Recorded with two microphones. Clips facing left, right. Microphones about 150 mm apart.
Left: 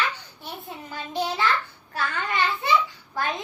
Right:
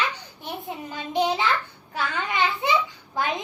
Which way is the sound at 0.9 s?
20° right (ahead or behind).